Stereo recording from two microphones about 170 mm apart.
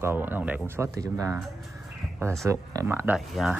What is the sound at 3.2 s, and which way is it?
Speech, centre (ahead or behind).